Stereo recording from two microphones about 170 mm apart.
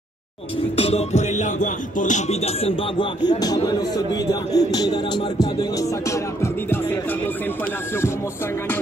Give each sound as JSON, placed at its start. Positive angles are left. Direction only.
{"t": 0.7, "sound": "music", "side_deg": 35}